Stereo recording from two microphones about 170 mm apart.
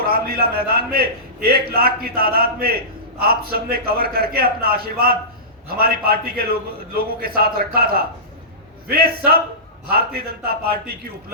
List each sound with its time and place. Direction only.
0.0 s a man's voice: 65° right (ahead or behind)